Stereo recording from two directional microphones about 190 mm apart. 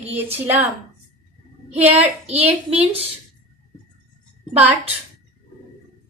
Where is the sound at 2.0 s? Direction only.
30° right (ahead or behind).